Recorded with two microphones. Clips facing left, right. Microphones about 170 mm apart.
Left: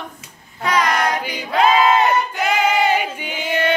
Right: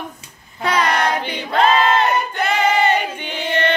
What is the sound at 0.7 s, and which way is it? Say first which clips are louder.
Child singing: even; 30° right (ahead or behind).